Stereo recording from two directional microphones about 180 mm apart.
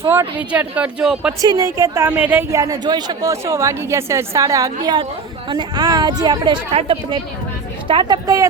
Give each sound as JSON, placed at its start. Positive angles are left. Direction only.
{"t": 0.0, "sound": "a woman's voice", "side_deg": -15}
{"t": 1.4, "sound": "a woman's voice", "side_deg": -20}